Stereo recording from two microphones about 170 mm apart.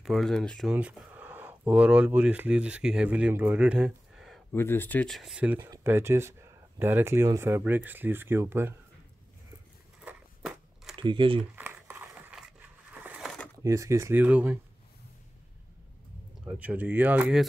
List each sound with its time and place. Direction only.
0.0 s speech: centre (ahead or behind)
4.5 s speech: 15° left (ahead or behind); by 8.7 s 15° right (ahead or behind)
10.0 s walk: 5° right (ahead or behind)
11.0 s speech: 30° right (ahead or behind)
11.5 s a sound: 10° right (ahead or behind)
13.7 s speech: 15° right (ahead or behind)
16.4 s speech: 10° right (ahead or behind)